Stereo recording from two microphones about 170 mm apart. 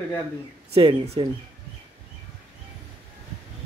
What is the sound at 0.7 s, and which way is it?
Speech, 30° right (ahead or behind).